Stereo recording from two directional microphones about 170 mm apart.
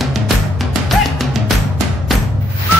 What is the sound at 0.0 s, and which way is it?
Music, centre (ahead or behind).